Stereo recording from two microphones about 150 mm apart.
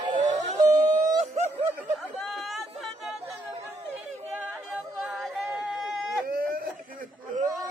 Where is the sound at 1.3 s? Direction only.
45° right (ahead or behind).